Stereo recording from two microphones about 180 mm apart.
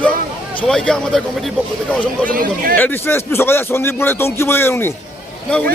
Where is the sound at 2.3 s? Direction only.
50° right (ahead or behind).